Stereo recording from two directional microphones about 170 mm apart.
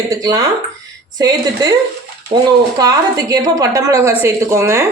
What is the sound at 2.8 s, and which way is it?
A woman's voice, 20° right (ahead or behind).